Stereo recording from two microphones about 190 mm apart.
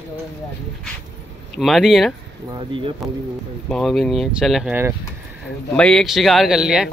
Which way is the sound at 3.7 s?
Centre (ahead or behind).